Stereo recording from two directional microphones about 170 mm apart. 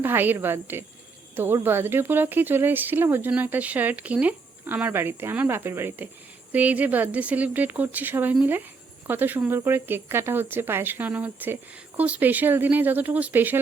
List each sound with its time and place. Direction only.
0.0 s speech: 10° right (ahead or behind)